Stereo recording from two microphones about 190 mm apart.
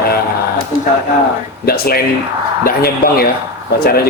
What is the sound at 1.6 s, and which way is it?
Speech, 55° left (ahead or behind).